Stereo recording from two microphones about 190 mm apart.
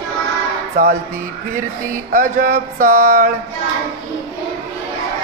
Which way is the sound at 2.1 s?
45° right (ahead or behind).